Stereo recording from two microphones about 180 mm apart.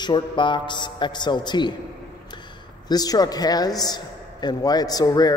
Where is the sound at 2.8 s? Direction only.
20° left (ahead or behind).